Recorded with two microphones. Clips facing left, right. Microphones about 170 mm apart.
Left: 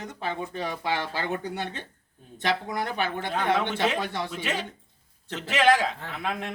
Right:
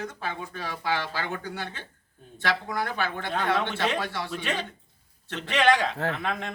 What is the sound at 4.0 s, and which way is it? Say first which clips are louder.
Speech: left 1 dB; 20° left (ahead or behind).